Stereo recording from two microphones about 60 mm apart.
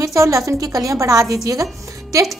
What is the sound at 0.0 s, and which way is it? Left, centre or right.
A woman's voice, right.